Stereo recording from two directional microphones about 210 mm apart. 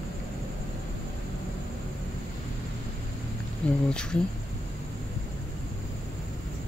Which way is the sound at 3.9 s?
5° left (ahead or behind).